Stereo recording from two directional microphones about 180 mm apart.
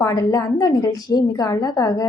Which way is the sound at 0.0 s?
15° left (ahead or behind).